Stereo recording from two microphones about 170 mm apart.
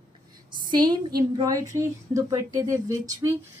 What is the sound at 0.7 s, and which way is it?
A woman's voice, 25° right (ahead or behind).